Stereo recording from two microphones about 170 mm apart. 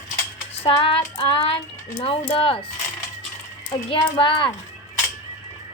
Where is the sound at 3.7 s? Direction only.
30° left (ahead or behind).